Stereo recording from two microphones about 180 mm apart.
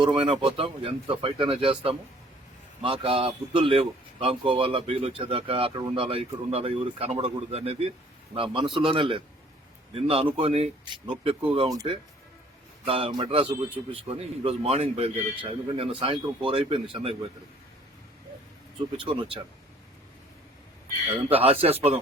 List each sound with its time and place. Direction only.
0.0 s speech: 25° right (ahead or behind)
12.8 s speech: 30° right (ahead or behind)
18.9 s speech: 25° right (ahead or behind)
21.2 s speech: 30° right (ahead or behind)